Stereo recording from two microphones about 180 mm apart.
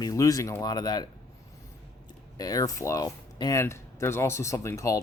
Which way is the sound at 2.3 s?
20° left (ahead or behind).